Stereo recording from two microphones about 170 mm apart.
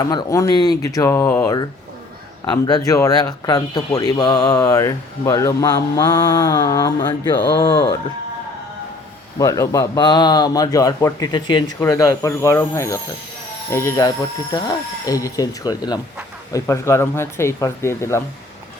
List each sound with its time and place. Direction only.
0.0 s speech: 25° left (ahead or behind)
9.4 s speech: 20° left (ahead or behind)